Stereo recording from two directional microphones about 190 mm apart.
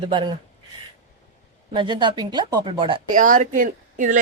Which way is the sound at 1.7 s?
25° right (ahead or behind).